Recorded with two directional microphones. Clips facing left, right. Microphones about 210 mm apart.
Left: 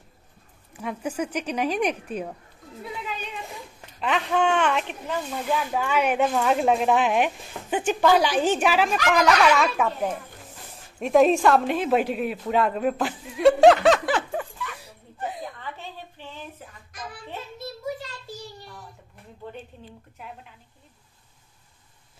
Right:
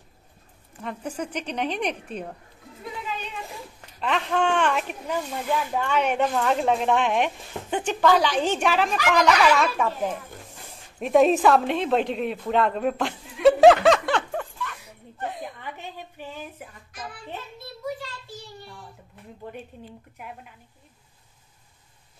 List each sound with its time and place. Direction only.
0.7 s a woman's voice: 5° left (ahead or behind)
4.0 s speech: 5° left (ahead or behind)
5.6 s speech: 5° left (ahead or behind)
15.1 s a sound: centre (ahead or behind)
15.6 s a woman's voice: 15° right (ahead or behind)